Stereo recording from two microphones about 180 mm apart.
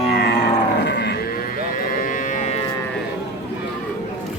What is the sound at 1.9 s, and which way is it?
Cattle, 50° left (ahead or behind).